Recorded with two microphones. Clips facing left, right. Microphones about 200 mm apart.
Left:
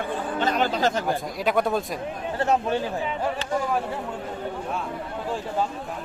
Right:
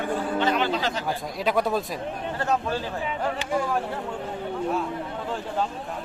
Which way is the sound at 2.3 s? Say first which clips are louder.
Left 4 dB; 25° left (ahead or behind).